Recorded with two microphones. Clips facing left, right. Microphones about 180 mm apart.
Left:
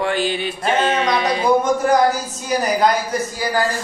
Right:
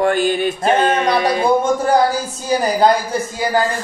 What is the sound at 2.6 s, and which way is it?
Speech, 30° right (ahead or behind).